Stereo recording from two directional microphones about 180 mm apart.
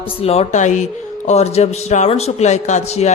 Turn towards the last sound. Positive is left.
turn(degrees=35)  # may be behind; listen again after turning